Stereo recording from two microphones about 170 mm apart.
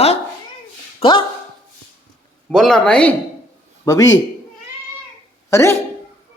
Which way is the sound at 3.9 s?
20° left (ahead or behind).